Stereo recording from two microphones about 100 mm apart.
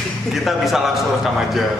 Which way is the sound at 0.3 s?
Centre (ahead or behind).